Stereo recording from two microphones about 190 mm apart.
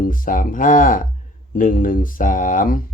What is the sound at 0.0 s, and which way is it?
Speech, 45° left (ahead or behind).